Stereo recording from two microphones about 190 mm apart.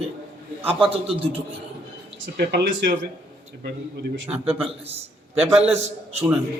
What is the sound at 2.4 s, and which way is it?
Speech, 60° right (ahead or behind).